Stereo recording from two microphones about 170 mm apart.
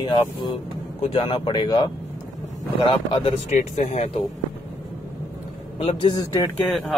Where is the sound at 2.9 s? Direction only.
30° left (ahead or behind).